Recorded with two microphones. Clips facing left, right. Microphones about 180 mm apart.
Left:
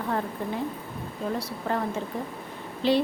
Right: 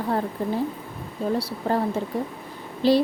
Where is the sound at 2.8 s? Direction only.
35° right (ahead or behind).